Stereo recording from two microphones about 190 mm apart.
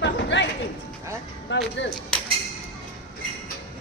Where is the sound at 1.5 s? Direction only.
70° left (ahead or behind).